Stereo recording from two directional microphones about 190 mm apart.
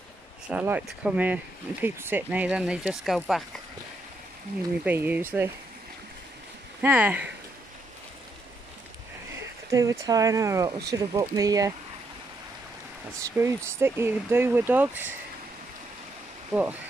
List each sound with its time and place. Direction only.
0.5 s speech: 10° right (ahead or behind)
4.8 s speech: 10° right (ahead or behind)
6.8 s speech: 10° right (ahead or behind)
9.7 s speech: 15° right (ahead or behind)
13.2 s speech: 15° right (ahead or behind)